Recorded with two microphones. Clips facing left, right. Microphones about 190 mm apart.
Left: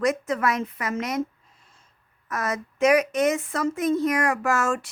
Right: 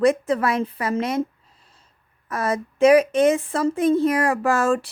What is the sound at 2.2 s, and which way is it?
Speech, 30° right (ahead or behind).